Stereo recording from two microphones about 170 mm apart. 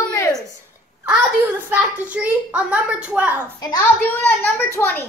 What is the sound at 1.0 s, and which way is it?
A child's voice, 10° right (ahead or behind).